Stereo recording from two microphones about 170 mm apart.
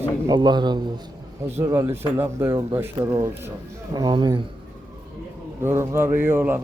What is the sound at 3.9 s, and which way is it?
Speech, 25° right (ahead or behind).